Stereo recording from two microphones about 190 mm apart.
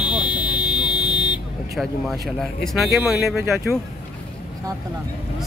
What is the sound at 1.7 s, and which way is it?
Speech, centre (ahead or behind).